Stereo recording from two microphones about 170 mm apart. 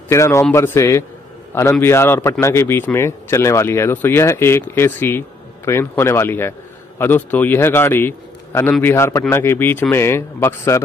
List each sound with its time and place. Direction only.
0.1 s speech: 15° left (ahead or behind)